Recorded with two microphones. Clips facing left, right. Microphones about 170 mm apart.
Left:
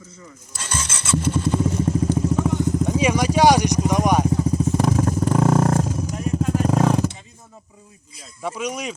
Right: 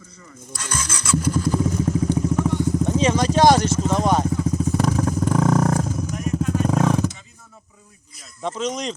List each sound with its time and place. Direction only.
0.5 s vehicle: 30° left (ahead or behind)
2.0 s motorcycle: 5° left (ahead or behind)
2.5 s vehicle: 10° left (ahead or behind)
6.1 s vehicle: 30° left (ahead or behind)
6.5 s vehicle: 10° left (ahead or behind)
8.4 s speech: 10° left (ahead or behind)